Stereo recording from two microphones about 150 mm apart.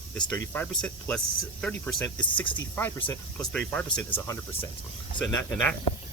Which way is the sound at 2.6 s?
10° left (ahead or behind).